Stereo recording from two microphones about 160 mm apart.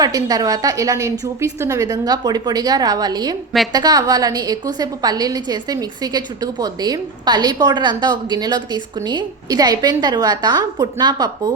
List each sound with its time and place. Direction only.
0.0 s a woman's voice: 25° right (ahead or behind)